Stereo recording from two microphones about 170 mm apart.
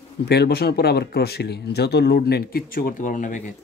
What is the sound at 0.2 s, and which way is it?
Speech, 75° left (ahead or behind).